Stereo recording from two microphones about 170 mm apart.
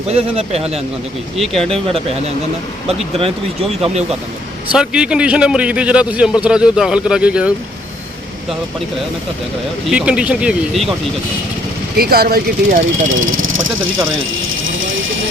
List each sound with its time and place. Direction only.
0.1 s speech: 40° right (ahead or behind)
1.4 s a man's voice: 5° left (ahead or behind)
3.8 s speech: 35° right (ahead or behind)
4.7 s a man's voice: 5° right (ahead or behind)
9.9 s a man's voice: 5° right (ahead or behind)
11.9 s speech: 65° right (ahead or behind)